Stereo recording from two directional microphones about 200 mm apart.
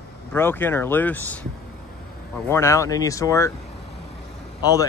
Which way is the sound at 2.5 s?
15° left (ahead or behind).